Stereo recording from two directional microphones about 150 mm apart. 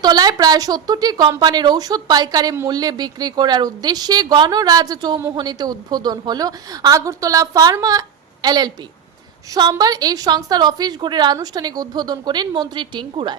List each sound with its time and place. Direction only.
0.0 s a woman's voice: 25° right (ahead or behind)